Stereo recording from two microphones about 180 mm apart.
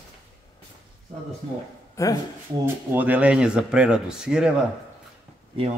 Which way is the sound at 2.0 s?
15° left (ahead or behind).